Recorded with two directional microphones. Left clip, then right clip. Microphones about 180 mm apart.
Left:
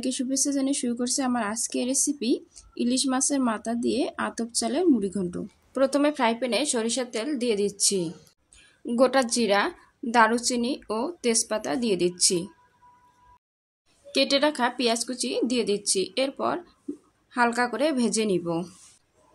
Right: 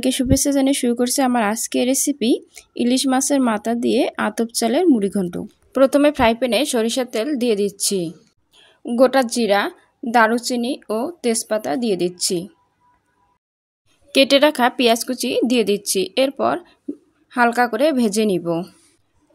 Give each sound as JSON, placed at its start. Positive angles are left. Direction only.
{"t": 0.0, "sound": "a woman's voice", "side_deg": -45}
{"t": 14.1, "sound": "speech", "side_deg": -45}